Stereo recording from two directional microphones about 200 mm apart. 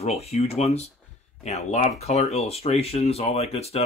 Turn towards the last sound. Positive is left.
turn(degrees=30)  # may be behind; listen again after turning